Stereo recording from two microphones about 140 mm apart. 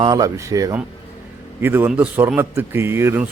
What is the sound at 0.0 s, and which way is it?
Speech, 25° right (ahead or behind).